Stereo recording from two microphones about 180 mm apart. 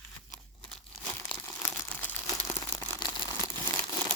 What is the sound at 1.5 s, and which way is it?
Crumpling, 15° left (ahead or behind).